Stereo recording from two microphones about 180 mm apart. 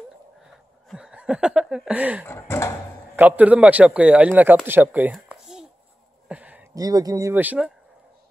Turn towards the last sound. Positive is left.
turn(degrees=-10)  # may be behind; listen again after turning